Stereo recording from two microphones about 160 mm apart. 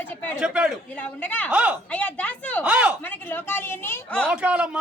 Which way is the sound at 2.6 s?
10° right (ahead or behind).